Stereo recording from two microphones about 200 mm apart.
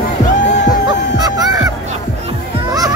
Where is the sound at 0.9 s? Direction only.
20° right (ahead or behind).